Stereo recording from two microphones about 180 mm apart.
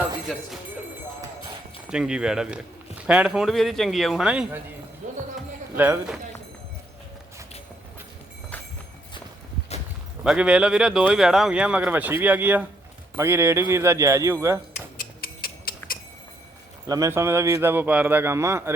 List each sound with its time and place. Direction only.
1.9 s a man's voice: 5° right (ahead or behind)
5.7 s speech: 10° right (ahead or behind)
10.2 s speech: 5° right (ahead or behind)
14.7 s tick-tock: 50° left (ahead or behind)
16.8 s speech: 20° right (ahead or behind)